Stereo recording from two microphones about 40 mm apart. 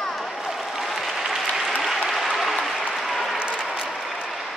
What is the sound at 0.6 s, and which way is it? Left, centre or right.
Applause, centre.